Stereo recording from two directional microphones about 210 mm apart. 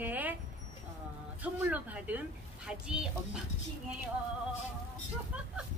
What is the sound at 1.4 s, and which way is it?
Speech, 5° right (ahead or behind).